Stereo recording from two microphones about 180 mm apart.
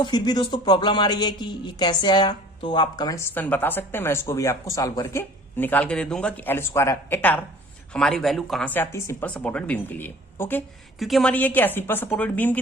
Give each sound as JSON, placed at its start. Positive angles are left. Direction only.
{"t": 0.0, "sound": "speech", "side_deg": 25}